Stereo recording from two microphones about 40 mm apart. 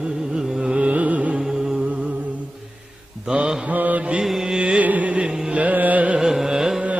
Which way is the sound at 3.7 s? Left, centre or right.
Right.